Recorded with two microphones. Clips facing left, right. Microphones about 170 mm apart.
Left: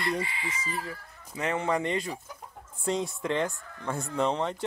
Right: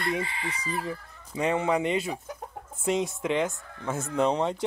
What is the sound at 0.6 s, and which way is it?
Chicken, 20° right (ahead or behind).